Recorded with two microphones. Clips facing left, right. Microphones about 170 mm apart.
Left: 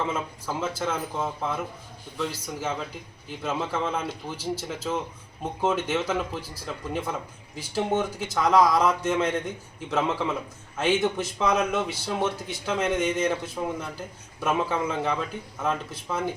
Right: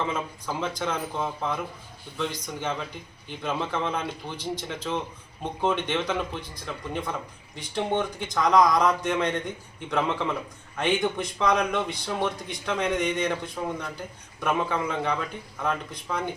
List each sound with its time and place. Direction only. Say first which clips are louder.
0.0 s a man's voice: even; 5° left (ahead or behind)